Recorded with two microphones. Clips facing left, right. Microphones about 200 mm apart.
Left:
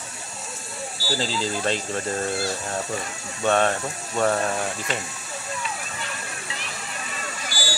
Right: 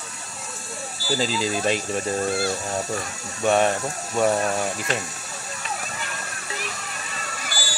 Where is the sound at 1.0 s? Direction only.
15° right (ahead or behind).